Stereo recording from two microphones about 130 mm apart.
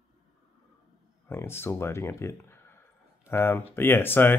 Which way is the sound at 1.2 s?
20° left (ahead or behind).